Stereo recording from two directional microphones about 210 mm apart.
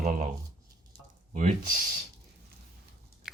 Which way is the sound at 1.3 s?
40° right (ahead or behind).